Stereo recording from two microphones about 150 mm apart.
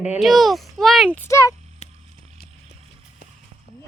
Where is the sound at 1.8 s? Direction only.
50° left (ahead or behind).